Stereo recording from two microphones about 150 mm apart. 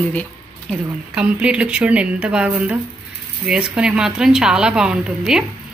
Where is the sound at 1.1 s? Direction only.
5° right (ahead or behind).